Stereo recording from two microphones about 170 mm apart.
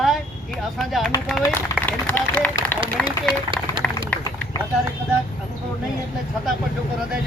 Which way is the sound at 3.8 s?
5° left (ahead or behind).